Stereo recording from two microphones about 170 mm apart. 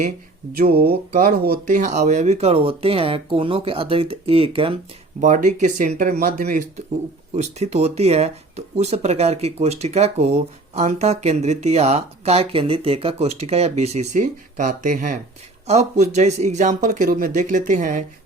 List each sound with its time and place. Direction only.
0.5 s speech: 60° right (ahead or behind); by 4.8 s 30° right (ahead or behind)
5.2 s speech: 45° right (ahead or behind)